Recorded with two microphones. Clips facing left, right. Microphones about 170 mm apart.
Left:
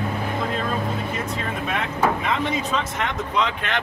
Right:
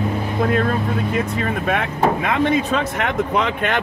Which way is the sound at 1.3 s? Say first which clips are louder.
Right 6 dB; 60° right (ahead or behind).